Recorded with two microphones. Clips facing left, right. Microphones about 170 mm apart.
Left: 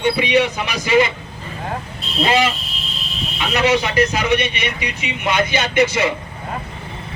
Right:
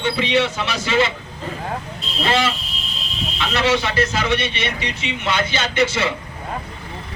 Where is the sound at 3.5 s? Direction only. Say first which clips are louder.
Left 3 dB; 15° left (ahead or behind).